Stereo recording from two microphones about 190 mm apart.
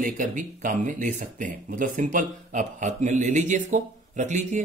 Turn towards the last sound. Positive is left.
turn(degrees=-40)  # may be behind; listen again after turning